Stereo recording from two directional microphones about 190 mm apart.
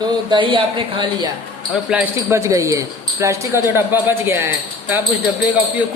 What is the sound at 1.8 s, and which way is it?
Speech, 5° right (ahead or behind).